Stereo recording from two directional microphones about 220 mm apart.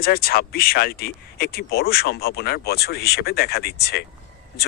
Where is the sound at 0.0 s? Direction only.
45° left (ahead or behind).